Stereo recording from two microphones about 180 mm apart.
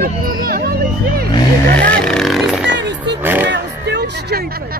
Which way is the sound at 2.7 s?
70° right (ahead or behind).